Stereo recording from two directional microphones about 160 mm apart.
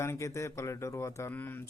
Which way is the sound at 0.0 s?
15° left (ahead or behind).